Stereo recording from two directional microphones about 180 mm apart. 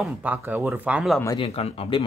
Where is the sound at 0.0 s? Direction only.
10° right (ahead or behind).